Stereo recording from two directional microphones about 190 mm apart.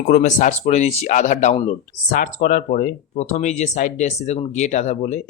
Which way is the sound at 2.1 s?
45° left (ahead or behind).